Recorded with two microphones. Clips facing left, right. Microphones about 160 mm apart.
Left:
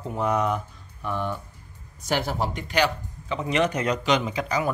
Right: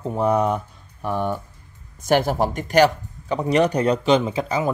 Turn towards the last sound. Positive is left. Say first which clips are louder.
# right 3 dB
turn(degrees=-25)  # may be behind; listen again after turning